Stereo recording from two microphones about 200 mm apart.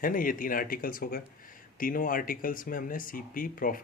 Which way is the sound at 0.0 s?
45° left (ahead or behind).